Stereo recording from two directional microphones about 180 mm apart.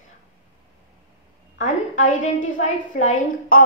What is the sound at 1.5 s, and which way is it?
A woman's voice, 45° left (ahead or behind).